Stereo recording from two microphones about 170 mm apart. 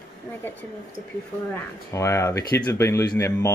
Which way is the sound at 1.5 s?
15° left (ahead or behind).